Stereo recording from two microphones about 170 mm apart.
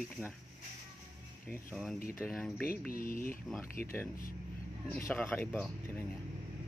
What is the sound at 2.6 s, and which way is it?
Mantra, 60° left (ahead or behind).